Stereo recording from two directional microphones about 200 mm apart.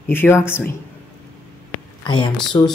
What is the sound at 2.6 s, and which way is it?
Speech, 20° left (ahead or behind).